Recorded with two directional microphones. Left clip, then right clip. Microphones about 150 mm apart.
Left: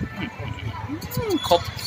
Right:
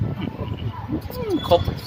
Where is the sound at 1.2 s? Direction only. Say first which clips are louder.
Right 1 dB; 15° right (ahead or behind).